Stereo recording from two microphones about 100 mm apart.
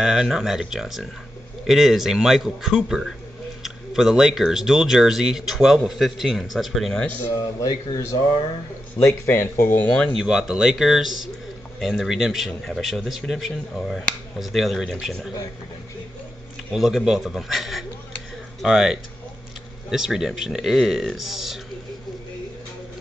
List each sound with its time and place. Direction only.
0.0 s speech: 5° right (ahead or behind)
7.6 s speech: 35° left (ahead or behind)
10.1 s speech: 5° right (ahead or behind)
16.7 s speech: 5° right (ahead or behind)